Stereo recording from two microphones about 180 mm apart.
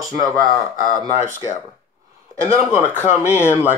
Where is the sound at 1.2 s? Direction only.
45° left (ahead or behind).